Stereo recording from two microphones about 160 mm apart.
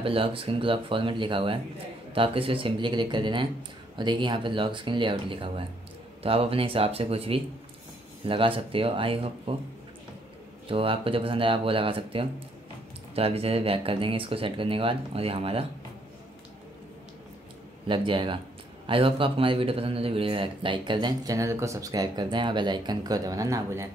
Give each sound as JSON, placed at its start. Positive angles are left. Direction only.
{"t": 0.0, "sound": "speech", "side_deg": -35}
{"t": 10.7, "sound": "speech", "side_deg": -35}
{"t": 17.8, "sound": "a man's voice", "side_deg": -30}